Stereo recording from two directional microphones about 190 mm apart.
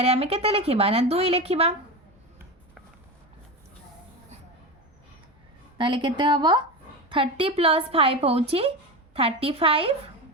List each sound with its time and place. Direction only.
0.0 s speech: 30° right (ahead or behind)
5.7 s a woman's voice: 25° right (ahead or behind)